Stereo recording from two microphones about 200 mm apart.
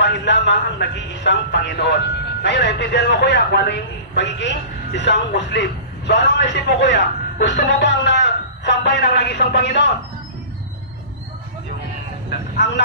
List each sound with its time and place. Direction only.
0.0 s speech: 60° left (ahead or behind)
12.6 s speech: 60° left (ahead or behind)